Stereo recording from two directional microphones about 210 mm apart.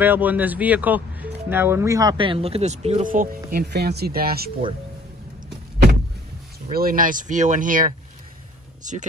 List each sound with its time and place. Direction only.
0.0 s speech: 10° right (ahead or behind); by 4.5 s 45° right (ahead or behind)
6.7 s speech: 45° right (ahead or behind)